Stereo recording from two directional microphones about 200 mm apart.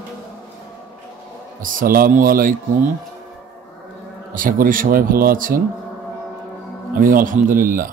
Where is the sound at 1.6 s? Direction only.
45° right (ahead or behind).